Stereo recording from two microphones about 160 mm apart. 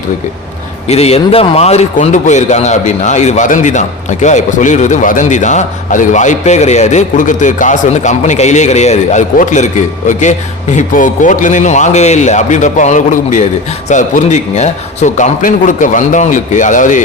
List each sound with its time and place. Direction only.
0.9 s speech: 40° left (ahead or behind)